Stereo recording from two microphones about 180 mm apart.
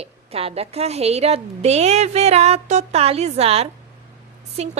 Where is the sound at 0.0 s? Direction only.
35° right (ahead or behind).